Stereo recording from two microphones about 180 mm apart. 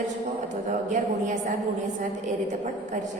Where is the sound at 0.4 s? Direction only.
45° right (ahead or behind).